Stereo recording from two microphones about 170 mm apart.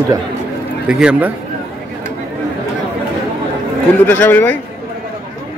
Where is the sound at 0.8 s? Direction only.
5° right (ahead or behind).